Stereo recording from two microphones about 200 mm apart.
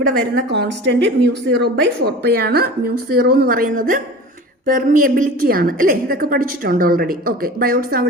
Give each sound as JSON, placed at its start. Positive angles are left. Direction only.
{"t": 0.5, "sound": "speech", "side_deg": -60}